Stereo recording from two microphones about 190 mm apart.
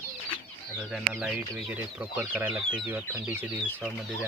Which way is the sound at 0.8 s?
5° right (ahead or behind).